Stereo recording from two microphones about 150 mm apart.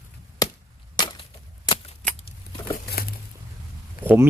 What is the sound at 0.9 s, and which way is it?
Chop, 30° left (ahead or behind).